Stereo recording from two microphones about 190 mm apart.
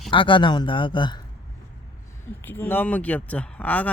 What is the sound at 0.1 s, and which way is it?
Speech, 25° left (ahead or behind).